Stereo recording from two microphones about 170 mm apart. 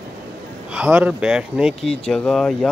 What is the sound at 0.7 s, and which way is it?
Speech, 5° right (ahead or behind).